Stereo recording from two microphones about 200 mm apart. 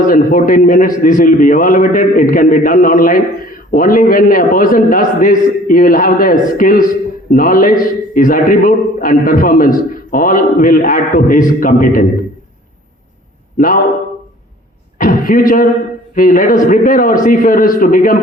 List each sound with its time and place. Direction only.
0.1 s a man's voice: 40° left (ahead or behind)
13.6 s a man's voice: 40° left (ahead or behind)
14.9 s a man's voice: 45° left (ahead or behind)